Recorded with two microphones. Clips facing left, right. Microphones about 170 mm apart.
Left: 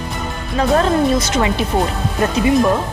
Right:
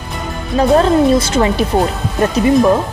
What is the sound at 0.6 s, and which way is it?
Speech, 30° right (ahead or behind).